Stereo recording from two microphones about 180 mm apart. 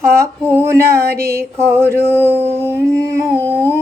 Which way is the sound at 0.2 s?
15° right (ahead or behind).